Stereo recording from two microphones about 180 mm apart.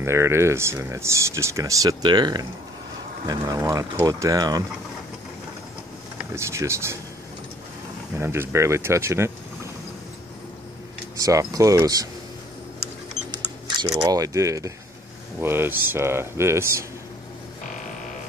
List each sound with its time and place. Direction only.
0.0 s speech: 15° right (ahead or behind)
6.3 s speech: 15° right (ahead or behind)
8.2 s speech: 15° right (ahead or behind)
11.1 s speech: 20° right (ahead or behind)
13.9 s speech: 20° right (ahead or behind)